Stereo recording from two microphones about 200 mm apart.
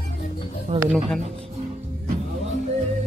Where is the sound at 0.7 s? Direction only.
35° right (ahead or behind).